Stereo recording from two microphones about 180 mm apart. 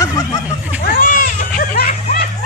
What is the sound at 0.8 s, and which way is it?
Children playing, 50° left (ahead or behind).